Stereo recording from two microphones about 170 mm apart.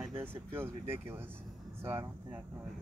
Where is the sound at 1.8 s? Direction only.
15° right (ahead or behind).